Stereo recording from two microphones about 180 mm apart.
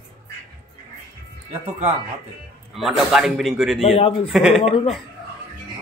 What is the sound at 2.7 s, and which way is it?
Speech, centre (ahead or behind).